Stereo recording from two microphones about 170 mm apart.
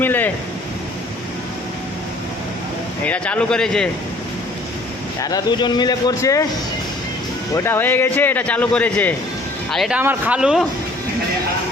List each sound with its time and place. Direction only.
0.0 s a sound: 10° left (ahead or behind)
3.0 s speech: 10° left (ahead or behind)
5.2 s speech: 25° left (ahead or behind)
7.5 s a man's voice: 15° left (ahead or behind); by 10.7 s 5° right (ahead or behind)